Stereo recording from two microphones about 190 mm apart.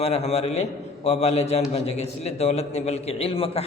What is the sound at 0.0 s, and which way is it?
A man's voice, 30° left (ahead or behind).